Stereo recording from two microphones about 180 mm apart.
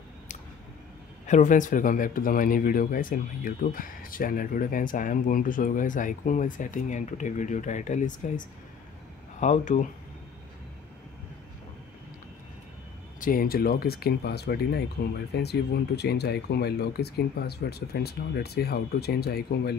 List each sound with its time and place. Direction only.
1.2 s speech: 45° left (ahead or behind)
13.2 s speech: 50° left (ahead or behind)